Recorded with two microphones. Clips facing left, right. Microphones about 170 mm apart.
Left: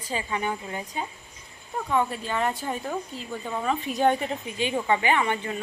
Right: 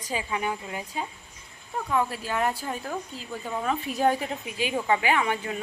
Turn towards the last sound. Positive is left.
turn(degrees=-5)  # may be behind; listen again after turning